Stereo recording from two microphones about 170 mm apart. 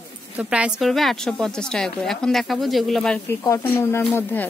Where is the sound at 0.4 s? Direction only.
5° right (ahead or behind).